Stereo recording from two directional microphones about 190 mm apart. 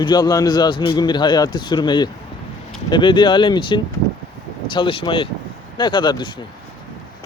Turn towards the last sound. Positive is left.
turn(degrees=25)  # may be behind; listen again after turning